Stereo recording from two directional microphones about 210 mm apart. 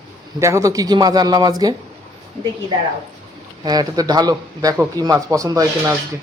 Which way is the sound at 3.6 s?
20° right (ahead or behind).